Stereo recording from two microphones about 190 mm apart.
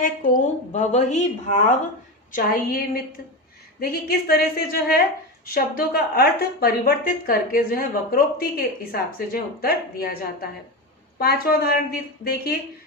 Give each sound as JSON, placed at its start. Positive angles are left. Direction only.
{"t": 0.0, "sound": "a woman's voice", "side_deg": 45}
{"t": 11.2, "sound": "a woman's voice", "side_deg": 55}